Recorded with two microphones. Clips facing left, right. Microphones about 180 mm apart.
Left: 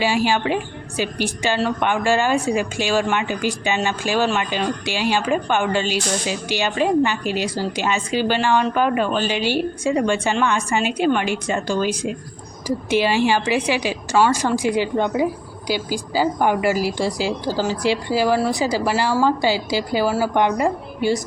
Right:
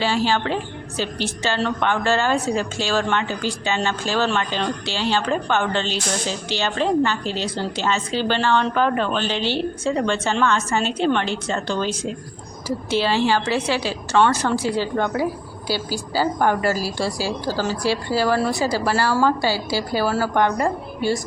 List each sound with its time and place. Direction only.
0.0 s a woman's voice: 10° left (ahead or behind)